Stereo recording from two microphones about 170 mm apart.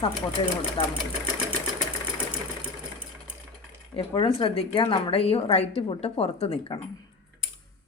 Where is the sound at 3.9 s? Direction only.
30° left (ahead or behind).